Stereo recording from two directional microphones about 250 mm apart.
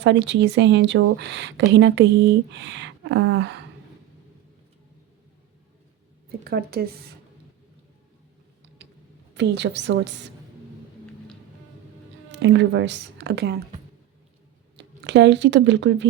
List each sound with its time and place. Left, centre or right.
0.0 s speech: right
6.5 s speech: right
9.3 s speech: right
12.3 s speech: right
14.8 s speech: right